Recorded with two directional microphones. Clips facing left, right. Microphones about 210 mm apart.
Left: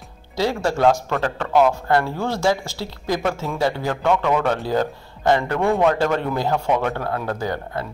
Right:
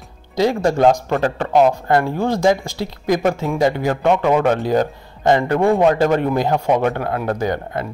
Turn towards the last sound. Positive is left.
turn(degrees=-20)  # may be behind; listen again after turning